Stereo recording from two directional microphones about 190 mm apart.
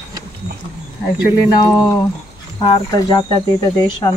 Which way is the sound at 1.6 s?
20° left (ahead or behind).